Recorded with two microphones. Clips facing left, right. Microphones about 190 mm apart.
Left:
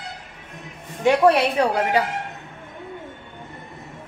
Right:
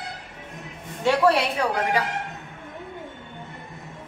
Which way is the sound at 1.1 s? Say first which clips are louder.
Left 4 dB; 15° left (ahead or behind).